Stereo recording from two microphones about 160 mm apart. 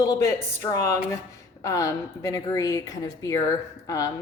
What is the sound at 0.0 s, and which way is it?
Speech, 20° left (ahead or behind).